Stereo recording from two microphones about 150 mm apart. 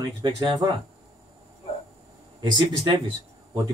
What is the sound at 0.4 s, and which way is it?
Speech, 25° right (ahead or behind).